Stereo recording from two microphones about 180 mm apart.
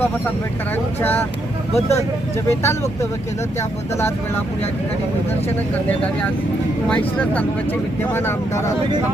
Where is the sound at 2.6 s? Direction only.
15° left (ahead or behind).